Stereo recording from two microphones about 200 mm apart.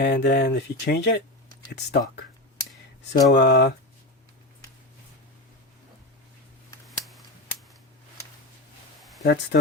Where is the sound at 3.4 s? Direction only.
55° left (ahead or behind).